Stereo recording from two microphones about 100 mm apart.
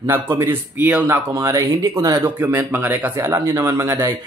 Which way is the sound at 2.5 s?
20° right (ahead or behind).